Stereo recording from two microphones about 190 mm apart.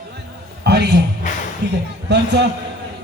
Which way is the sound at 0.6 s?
60° right (ahead or behind).